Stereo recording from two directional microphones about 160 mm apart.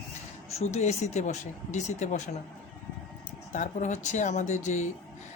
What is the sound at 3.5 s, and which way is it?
Speech, 50° left (ahead or behind).